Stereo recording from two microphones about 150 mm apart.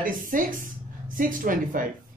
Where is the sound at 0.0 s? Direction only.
65° right (ahead or behind).